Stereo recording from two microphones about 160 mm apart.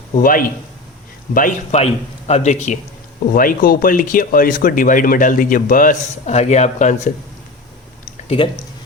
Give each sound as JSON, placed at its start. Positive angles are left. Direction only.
{"t": 0.2, "sound": "a man's voice", "side_deg": 60}
{"t": 3.3, "sound": "speech", "side_deg": 60}